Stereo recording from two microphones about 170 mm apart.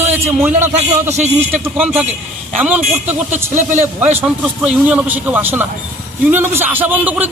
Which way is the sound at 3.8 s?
10° right (ahead or behind).